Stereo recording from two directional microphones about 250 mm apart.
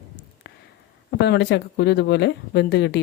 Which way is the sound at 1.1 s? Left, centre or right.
Left.